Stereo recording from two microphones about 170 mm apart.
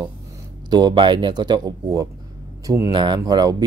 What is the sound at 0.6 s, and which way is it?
Speech, 25° right (ahead or behind).